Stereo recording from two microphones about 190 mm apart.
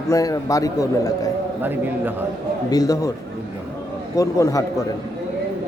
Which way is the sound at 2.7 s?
20° left (ahead or behind).